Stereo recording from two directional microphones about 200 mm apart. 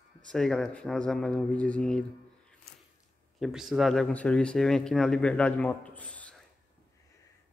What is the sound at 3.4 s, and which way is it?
Speech, centre (ahead or behind).